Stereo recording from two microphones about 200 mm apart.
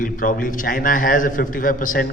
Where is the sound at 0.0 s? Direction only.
45° left (ahead or behind).